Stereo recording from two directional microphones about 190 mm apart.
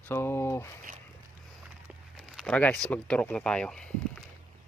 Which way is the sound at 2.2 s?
Centre (ahead or behind).